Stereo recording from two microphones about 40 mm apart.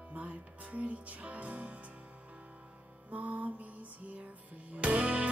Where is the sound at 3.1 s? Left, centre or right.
Right.